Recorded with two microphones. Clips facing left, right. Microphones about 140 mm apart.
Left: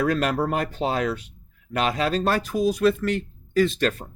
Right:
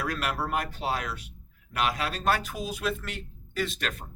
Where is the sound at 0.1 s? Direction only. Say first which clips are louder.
Left 7 dB; 40° left (ahead or behind).